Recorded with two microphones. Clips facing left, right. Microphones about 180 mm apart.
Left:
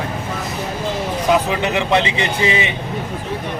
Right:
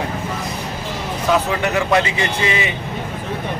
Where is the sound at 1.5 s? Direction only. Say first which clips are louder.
Even; 20° left (ahead or behind).